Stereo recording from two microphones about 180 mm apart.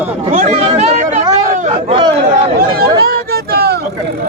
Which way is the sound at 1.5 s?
45° right (ahead or behind).